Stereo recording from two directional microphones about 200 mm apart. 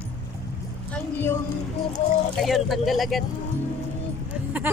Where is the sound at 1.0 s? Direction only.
10° left (ahead or behind).